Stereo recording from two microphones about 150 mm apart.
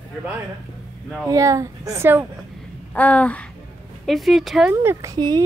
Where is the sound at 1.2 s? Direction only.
20° right (ahead or behind).